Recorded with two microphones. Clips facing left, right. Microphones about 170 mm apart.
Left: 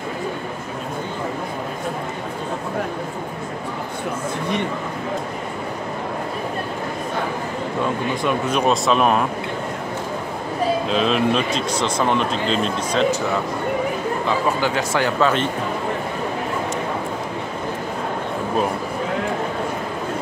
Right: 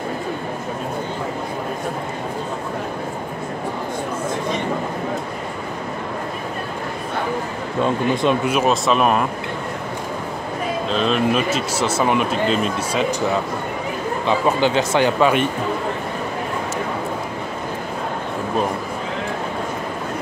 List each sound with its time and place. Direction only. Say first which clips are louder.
8.5 s speech: right 1 dB; 5° right (ahead or behind)
10.9 s speech: right 3 dB; centre (ahead or behind)
14.2 s speech: right 5 dB; 20° right (ahead or behind)